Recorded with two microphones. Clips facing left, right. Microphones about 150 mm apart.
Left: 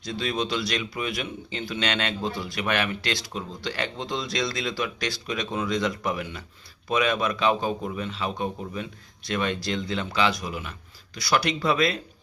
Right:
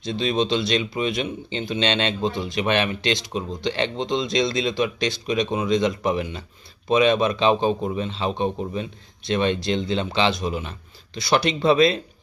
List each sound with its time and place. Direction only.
0.0 s a man's voice: 25° right (ahead or behind)